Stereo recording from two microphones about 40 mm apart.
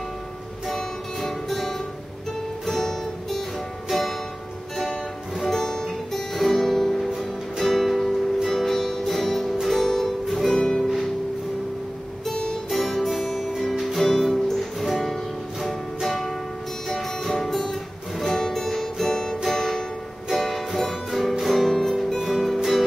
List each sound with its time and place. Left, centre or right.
0.7 s music: centre
5.5 s music: centre
12.3 s guitar: centre
12.6 s music: centre